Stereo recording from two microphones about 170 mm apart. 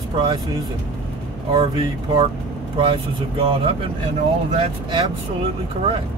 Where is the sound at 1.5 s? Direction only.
30° right (ahead or behind).